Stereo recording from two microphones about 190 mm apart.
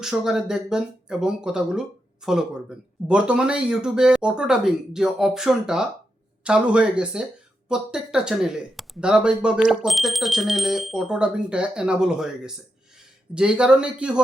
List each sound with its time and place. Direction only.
0.0 s speech: centre (ahead or behind)